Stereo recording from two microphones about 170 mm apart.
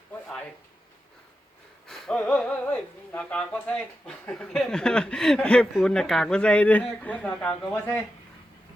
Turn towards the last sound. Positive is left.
turn(degrees=10)  # may be behind; listen again after turning